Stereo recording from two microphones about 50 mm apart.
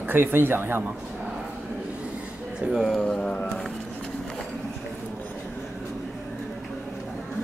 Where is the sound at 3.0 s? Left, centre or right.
Centre.